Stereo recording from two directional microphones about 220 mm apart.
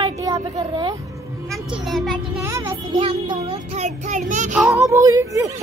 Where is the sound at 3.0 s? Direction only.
25° right (ahead or behind).